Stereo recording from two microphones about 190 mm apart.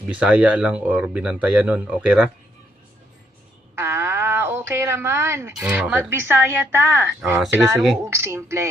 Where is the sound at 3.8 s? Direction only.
15° right (ahead or behind).